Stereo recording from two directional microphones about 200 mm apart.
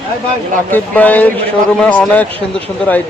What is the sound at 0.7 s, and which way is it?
A man's voice, 10° left (ahead or behind).